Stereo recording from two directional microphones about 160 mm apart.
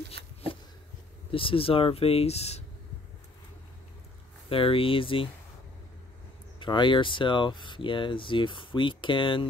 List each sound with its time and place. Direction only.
1.3 s speech: 35° left (ahead or behind)
4.5 s speech: 35° left (ahead or behind)
6.6 s speech: 30° left (ahead or behind)